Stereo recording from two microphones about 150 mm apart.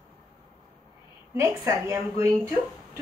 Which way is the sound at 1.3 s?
20° right (ahead or behind).